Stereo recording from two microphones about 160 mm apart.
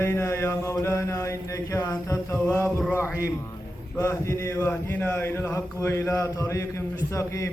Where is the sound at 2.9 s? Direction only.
10° right (ahead or behind).